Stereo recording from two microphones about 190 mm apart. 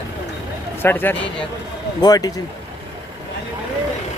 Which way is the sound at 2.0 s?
20° left (ahead or behind).